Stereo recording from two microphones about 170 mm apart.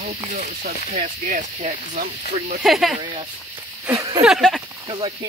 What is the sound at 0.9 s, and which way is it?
Speech, 45° right (ahead or behind).